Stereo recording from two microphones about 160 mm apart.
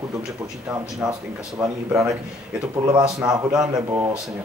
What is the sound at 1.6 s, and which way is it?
A man's voice, 20° right (ahead or behind).